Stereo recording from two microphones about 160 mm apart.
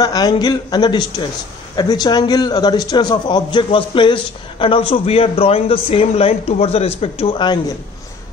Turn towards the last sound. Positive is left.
turn(degrees=30)  # may be behind; listen again after turning